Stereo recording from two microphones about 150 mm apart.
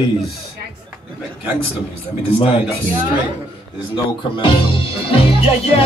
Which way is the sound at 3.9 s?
35° left (ahead or behind).